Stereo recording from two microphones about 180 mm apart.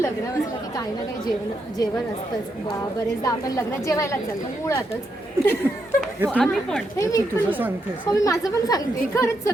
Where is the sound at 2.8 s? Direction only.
20° left (ahead or behind).